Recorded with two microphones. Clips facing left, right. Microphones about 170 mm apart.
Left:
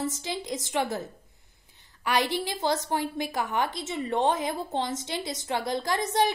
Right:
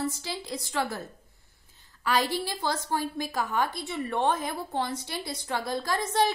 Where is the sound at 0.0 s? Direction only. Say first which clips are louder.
Left 1 dB; 20° left (ahead or behind).